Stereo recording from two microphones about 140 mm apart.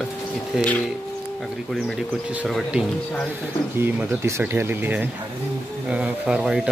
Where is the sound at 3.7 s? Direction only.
15° right (ahead or behind).